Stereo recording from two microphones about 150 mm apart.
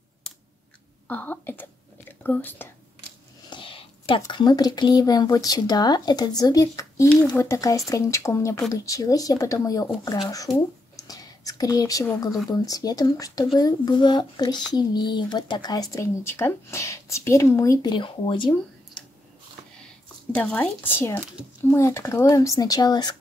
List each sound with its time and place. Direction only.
1.0 s whispering: 10° left (ahead or behind)
3.4 s a sound: 35° left (ahead or behind)
4.3 s speech: 30° left (ahead or behind)
11.0 s whispering: 25° left (ahead or behind)
12.6 s speech: 25° left (ahead or behind)
19.0 s a sound: 5° left (ahead or behind)
20.3 s speech: 10° left (ahead or behind); by 23.1 s 30° left (ahead or behind)